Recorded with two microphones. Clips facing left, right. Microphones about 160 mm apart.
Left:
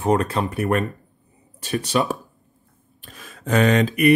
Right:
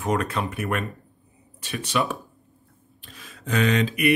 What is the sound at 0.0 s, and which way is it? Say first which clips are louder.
Speech: left 5 dB; 35° left (ahead or behind).